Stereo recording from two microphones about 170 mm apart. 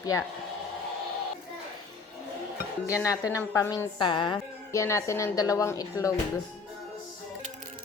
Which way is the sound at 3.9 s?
25° left (ahead or behind).